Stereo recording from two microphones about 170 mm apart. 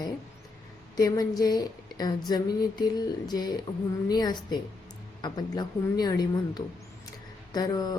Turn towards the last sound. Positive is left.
turn(degrees=25)  # may be behind; listen again after turning